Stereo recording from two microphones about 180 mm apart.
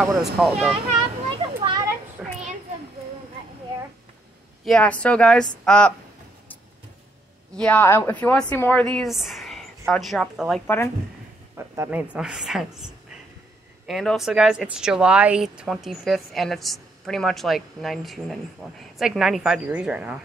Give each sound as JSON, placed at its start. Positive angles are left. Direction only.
{"t": 0.2, "sound": "a woman's voice", "side_deg": 0}
{"t": 0.8, "sound": "a sound", "side_deg": -30}
{"t": 2.2, "sound": "children playing", "side_deg": -5}
{"t": 4.6, "sound": "a woman's voice", "side_deg": 5}
{"t": 7.5, "sound": "a woman's voice", "side_deg": 5}
{"t": 11.5, "sound": "a woman's voice", "side_deg": -15}